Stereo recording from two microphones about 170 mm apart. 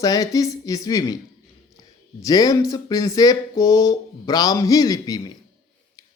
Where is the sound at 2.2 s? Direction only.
20° left (ahead or behind).